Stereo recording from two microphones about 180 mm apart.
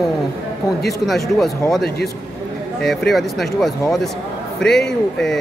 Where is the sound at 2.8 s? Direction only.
Centre (ahead or behind).